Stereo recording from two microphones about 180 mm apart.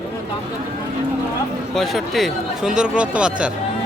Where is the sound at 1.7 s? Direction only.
Centre (ahead or behind).